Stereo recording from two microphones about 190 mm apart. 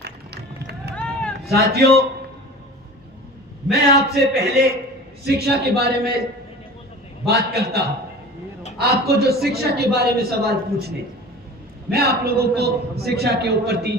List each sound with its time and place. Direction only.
0.0 s run: 60° right (ahead or behind)
0.9 s a sound: 5° left (ahead or behind)
1.5 s a man's voice: 55° right (ahead or behind)
3.7 s a man's voice: 60° right (ahead or behind)
7.3 s a man's voice: 55° right (ahead or behind)
8.8 s a man's voice: 55° right (ahead or behind)